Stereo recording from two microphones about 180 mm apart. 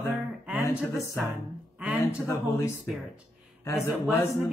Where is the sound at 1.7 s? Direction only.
10° right (ahead or behind).